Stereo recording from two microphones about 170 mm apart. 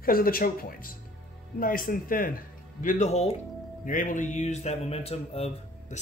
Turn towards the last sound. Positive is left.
turn(degrees=35)  # may be behind; listen again after turning